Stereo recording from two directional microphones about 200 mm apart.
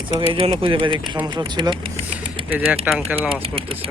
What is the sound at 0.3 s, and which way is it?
Speech, 30° right (ahead or behind).